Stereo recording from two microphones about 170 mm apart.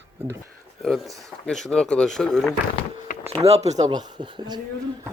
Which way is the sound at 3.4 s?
40° right (ahead or behind).